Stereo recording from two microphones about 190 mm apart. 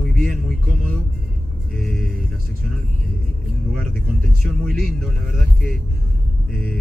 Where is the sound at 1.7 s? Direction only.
Centre (ahead or behind).